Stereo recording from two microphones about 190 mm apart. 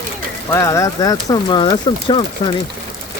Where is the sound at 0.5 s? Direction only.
15° left (ahead or behind).